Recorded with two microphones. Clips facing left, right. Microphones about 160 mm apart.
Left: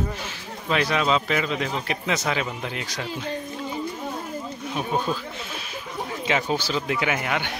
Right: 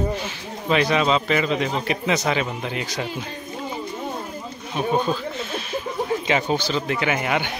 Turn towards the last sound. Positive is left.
turn(degrees=-5)  # may be behind; listen again after turning